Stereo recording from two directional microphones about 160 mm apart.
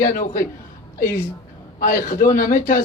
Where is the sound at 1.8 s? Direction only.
60° left (ahead or behind).